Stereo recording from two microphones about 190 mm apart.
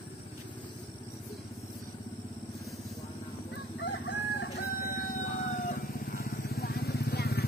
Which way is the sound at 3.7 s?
75° left (ahead or behind).